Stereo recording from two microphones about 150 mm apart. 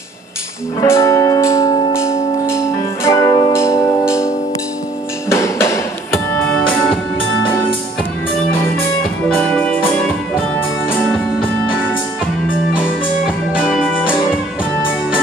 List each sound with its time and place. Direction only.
0.8 s music: 20° left (ahead or behind)
5.3 s music: 15° left (ahead or behind)
9.5 s music: 10° left (ahead or behind)